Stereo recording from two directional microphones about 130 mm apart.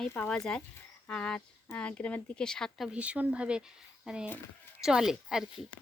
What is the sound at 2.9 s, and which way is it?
A child's voice, 10° right (ahead or behind).